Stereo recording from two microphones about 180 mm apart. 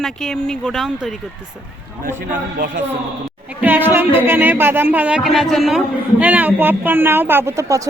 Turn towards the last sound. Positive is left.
turn(degrees=-15)  # may be behind; listen again after turning